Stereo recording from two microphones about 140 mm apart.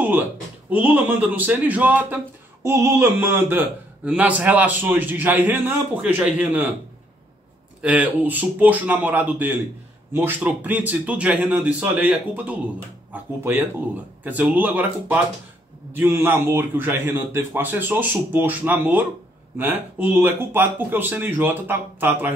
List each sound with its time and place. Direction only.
0.7 s a man's voice: 10° right (ahead or behind)
7.8 s a man's voice: 10° right (ahead or behind)